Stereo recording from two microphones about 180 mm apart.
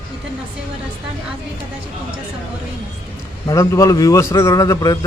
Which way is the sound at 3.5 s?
20° left (ahead or behind).